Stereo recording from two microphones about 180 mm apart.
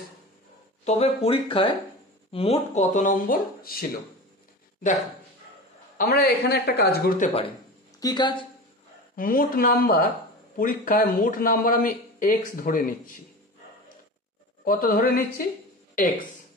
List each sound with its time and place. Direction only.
0.8 s speech: 35° left (ahead or behind); by 3.8 s 50° left (ahead or behind)
5.9 s speech: 60° left (ahead or behind)
8.0 s speech: 25° left (ahead or behind)
9.1 s speech: 55° left (ahead or behind)
14.6 s speech: 50° left (ahead or behind)